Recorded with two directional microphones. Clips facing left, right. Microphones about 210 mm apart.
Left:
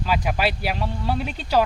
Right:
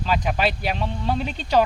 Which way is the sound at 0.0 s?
5° left (ahead or behind).